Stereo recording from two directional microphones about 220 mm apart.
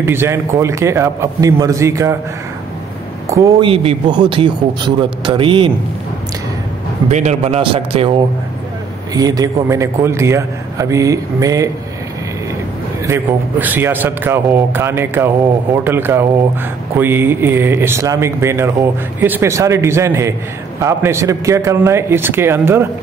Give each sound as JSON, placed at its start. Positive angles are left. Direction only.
{"t": 0.0, "sound": "speech", "side_deg": -10}
{"t": 3.3, "sound": "speech", "side_deg": -15}
{"t": 7.1, "sound": "speech", "side_deg": -30}
{"t": 9.1, "sound": "speech", "side_deg": -15}
{"t": 13.0, "sound": "speech", "side_deg": -10}